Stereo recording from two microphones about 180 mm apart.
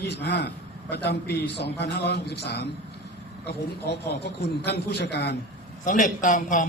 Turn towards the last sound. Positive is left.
turn(degrees=45)  # may be behind; listen again after turning